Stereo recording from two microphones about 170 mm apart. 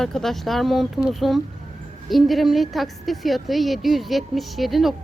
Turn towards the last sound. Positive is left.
turn(degrees=0)  # may be behind; listen again after turning